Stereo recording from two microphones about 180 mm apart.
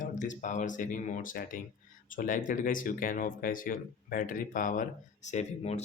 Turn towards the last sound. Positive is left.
turn(degrees=40)  # may be behind; listen again after turning